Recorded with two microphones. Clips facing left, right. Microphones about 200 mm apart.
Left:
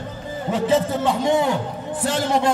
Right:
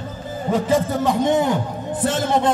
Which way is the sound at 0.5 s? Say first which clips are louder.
Even; 10° right (ahead or behind).